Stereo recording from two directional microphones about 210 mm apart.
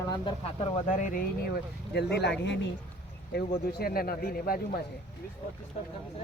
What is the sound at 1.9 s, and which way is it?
Speech, 55° left (ahead or behind).